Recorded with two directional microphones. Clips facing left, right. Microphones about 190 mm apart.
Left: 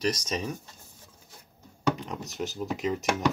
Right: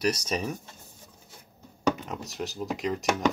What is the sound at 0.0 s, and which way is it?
Speech, 10° right (ahead or behind).